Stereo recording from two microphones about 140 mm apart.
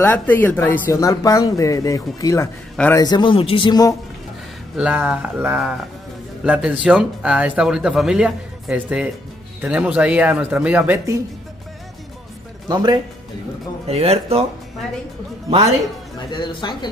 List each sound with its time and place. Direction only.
0.0 s a man's voice: 15° left (ahead or behind); by 3.9 s 30° left (ahead or behind)
4.7 s speech: 10° right (ahead or behind)
12.6 s speech: 30° right (ahead or behind)
13.8 s speech: 45° right (ahead or behind)
16.3 s a man's voice: 30° left (ahead or behind)